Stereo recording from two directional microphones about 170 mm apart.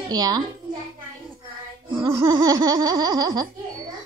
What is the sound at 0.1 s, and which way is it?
Speech, 25° right (ahead or behind).